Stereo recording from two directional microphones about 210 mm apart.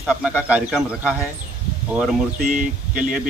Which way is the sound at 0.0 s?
5° right (ahead or behind).